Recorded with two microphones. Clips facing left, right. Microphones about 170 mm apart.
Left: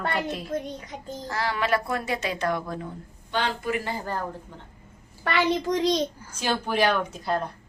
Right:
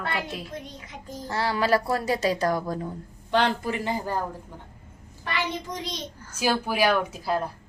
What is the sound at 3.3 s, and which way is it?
Speech, 70° right (ahead or behind).